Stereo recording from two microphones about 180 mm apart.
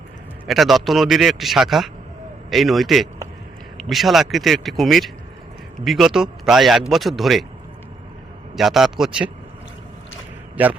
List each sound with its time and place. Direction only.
0.4 s a man's voice: centre (ahead or behind)
8.5 s a man's voice: centre (ahead or behind)
10.6 s a man's voice: 10° right (ahead or behind)